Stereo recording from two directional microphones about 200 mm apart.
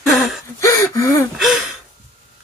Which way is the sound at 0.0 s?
Centre (ahead or behind).